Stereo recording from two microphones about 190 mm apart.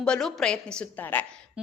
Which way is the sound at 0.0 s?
5° left (ahead or behind).